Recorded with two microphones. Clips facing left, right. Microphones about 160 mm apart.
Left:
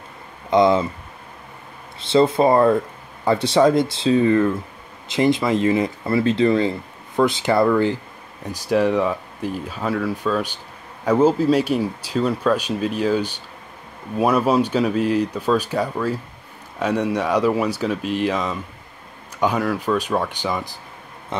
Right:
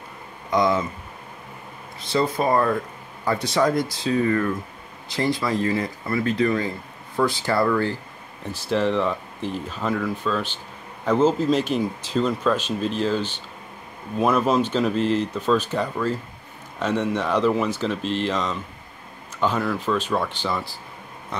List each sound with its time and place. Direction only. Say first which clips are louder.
0.5 s speech: left 5 dB; 25° left (ahead or behind)
2.0 s speech: left 7 dB; 25° left (ahead or behind)